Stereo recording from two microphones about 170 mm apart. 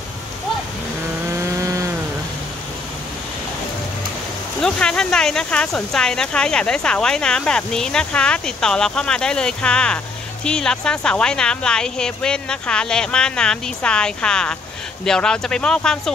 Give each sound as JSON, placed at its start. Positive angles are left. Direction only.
{"t": 1.6, "sound": "chainsaw", "side_deg": -20}
{"t": 4.6, "sound": "speech", "side_deg": 5}